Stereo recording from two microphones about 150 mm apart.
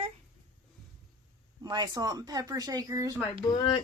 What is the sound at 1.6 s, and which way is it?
Speech, 30° right (ahead or behind).